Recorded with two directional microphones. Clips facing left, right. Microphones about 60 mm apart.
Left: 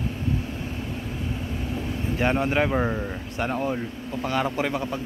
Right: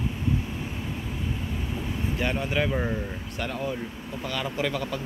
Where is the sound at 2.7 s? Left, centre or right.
Centre.